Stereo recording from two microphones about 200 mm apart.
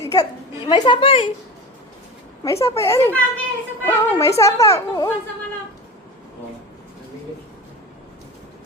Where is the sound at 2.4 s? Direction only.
15° left (ahead or behind).